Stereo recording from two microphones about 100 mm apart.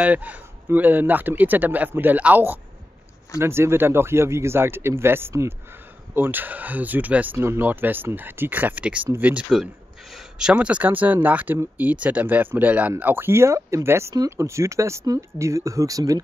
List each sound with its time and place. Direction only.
0.0 s speech: 15° right (ahead or behind); by 16.2 s 35° right (ahead or behind)